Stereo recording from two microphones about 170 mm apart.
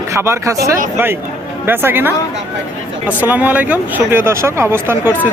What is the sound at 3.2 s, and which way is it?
Speech, 10° right (ahead or behind).